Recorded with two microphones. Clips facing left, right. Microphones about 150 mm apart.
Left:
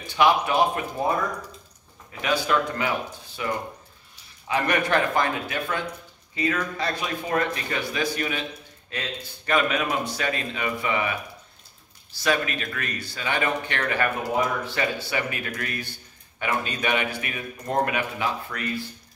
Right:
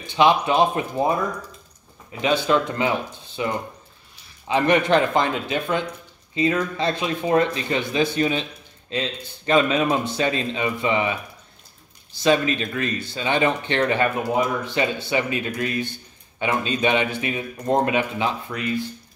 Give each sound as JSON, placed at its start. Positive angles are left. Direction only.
{"t": 0.0, "sound": "speech", "side_deg": -20}
{"t": 2.2, "sound": "speech", "side_deg": -25}